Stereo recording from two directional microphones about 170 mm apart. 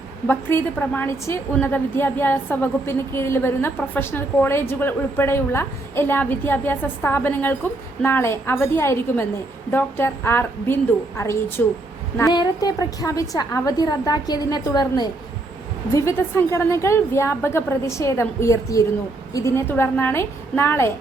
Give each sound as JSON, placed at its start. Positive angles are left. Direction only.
{"t": 0.3, "sound": "a woman's voice", "side_deg": 10}